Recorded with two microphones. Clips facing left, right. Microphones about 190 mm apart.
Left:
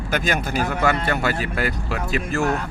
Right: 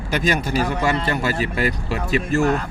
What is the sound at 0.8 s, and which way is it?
Speech, 60° left (ahead or behind).